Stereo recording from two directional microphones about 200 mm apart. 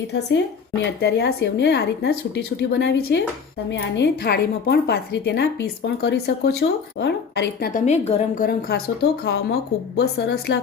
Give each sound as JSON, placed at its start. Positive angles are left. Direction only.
{"t": 0.1, "sound": "a woman's voice", "side_deg": 60}
{"t": 7.9, "sound": "a woman's voice", "side_deg": 35}
{"t": 9.2, "sound": "a woman's voice", "side_deg": 55}